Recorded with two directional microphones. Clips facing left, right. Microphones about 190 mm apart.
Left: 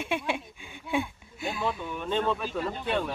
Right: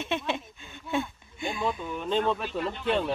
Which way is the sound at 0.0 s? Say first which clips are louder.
Even; 10° left (ahead or behind).